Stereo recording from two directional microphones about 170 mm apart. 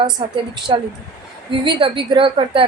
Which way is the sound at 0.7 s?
30° right (ahead or behind).